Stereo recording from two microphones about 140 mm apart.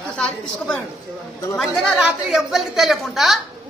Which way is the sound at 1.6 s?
Centre (ahead or behind).